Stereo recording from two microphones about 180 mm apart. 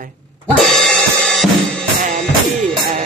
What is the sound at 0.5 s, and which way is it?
Drum kit, centre (ahead or behind).